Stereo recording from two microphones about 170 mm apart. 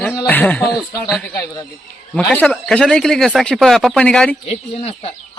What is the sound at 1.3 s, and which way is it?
Speech, 20° left (ahead or behind).